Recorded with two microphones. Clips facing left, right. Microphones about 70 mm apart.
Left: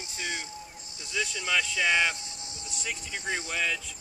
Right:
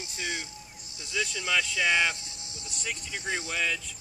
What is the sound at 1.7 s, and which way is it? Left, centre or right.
Speech, centre.